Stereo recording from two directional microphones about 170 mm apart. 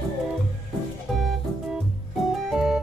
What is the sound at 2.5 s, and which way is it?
Music, 5° right (ahead or behind).